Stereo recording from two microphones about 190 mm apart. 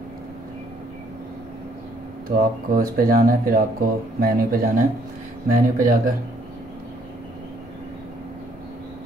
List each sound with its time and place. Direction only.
2.3 s speech: 50° right (ahead or behind)